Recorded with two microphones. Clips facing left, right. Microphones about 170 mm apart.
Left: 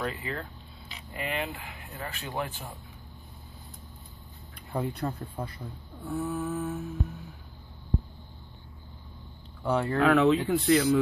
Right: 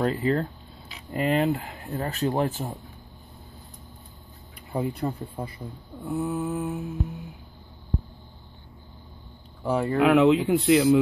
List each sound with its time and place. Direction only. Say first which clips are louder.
0.0 s speech: right 10 dB; 40° right (ahead or behind)
4.7 s speech: right 3 dB; 5° right (ahead or behind)
6.0 s speech: right 3 dB; 20° right (ahead or behind)
9.7 s speech: right 3 dB; 5° right (ahead or behind)
10.0 s speech: right 4 dB; 15° right (ahead or behind)